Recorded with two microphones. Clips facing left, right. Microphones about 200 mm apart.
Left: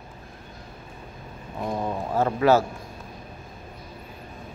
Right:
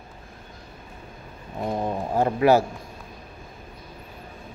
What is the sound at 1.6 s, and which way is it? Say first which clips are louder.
Speech: right 1 dB; 20° right (ahead or behind).